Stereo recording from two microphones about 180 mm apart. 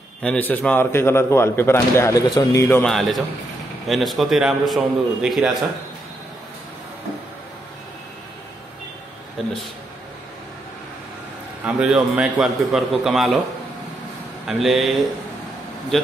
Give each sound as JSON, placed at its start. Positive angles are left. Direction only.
{"t": 0.2, "sound": "a man's voice", "side_deg": 10}
{"t": 2.8, "sound": "a man's voice", "side_deg": 0}
{"t": 11.6, "sound": "a man's voice", "side_deg": -5}
{"t": 14.4, "sound": "a man's voice", "side_deg": 0}